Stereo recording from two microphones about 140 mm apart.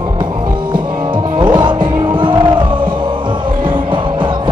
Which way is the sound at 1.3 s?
35° right (ahead or behind).